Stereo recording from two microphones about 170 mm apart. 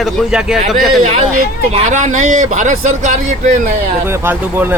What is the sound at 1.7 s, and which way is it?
Speech, 45° right (ahead or behind).